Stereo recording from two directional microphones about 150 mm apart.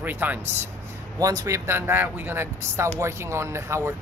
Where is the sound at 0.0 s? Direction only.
10° right (ahead or behind).